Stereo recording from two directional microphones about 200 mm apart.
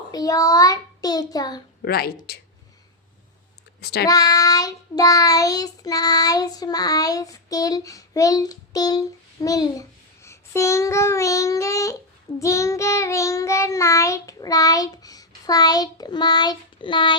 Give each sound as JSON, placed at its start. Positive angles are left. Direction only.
{"t": 0.1, "sound": "child singing", "side_deg": 20}
{"t": 1.8, "sound": "a woman's voice", "side_deg": 50}
{"t": 4.0, "sound": "child singing", "side_deg": 20}